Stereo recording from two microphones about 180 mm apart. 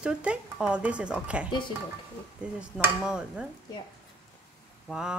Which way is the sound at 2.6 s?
5° right (ahead or behind).